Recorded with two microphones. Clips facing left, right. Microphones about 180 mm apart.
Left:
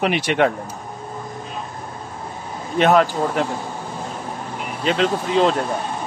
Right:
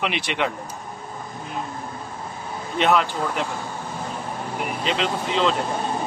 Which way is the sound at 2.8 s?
45° left (ahead or behind).